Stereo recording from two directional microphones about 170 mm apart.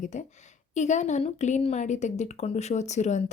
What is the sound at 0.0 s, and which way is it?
Speech, 45° left (ahead or behind).